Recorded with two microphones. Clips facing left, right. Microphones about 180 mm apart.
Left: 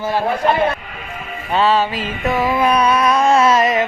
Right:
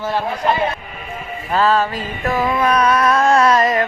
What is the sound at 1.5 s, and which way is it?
Speech, centre (ahead or behind).